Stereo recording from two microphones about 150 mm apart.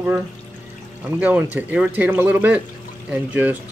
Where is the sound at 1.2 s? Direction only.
10° right (ahead or behind).